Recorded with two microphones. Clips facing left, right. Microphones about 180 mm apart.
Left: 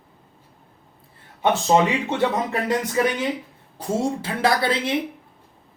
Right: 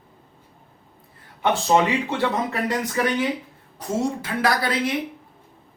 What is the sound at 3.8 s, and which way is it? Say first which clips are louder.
Speech: left 1 dB; 30° left (ahead or behind).